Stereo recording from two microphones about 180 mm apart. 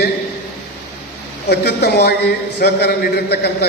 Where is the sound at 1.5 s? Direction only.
65° left (ahead or behind).